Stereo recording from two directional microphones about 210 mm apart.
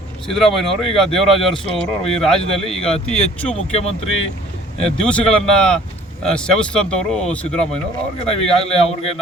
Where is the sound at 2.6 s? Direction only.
30° left (ahead or behind).